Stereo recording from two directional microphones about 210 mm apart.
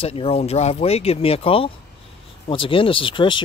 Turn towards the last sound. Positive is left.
turn(degrees=25)  # may be behind; listen again after turning